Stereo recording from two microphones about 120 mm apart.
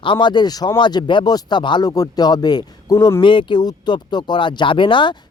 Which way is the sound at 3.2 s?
45° left (ahead or behind).